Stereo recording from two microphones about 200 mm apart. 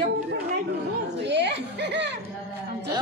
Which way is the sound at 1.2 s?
60° right (ahead or behind).